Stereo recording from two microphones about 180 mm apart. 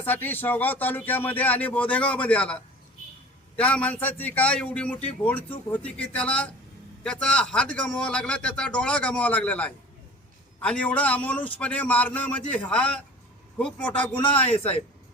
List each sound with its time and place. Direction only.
0.0 s a man's voice: 10° left (ahead or behind)
14.3 s speech: 35° left (ahead or behind)